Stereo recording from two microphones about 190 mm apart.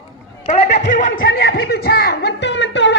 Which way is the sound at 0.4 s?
40° left (ahead or behind).